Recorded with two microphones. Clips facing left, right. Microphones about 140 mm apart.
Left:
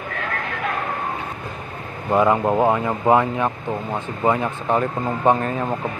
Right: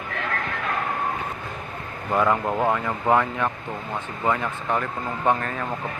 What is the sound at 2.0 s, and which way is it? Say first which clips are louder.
Speech: left 5 dB; 20° left (ahead or behind).